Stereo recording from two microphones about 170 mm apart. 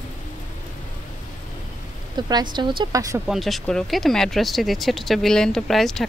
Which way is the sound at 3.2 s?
Centre (ahead or behind).